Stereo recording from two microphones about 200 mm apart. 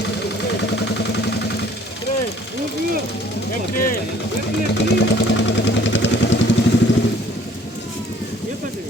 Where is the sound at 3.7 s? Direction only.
45° left (ahead or behind).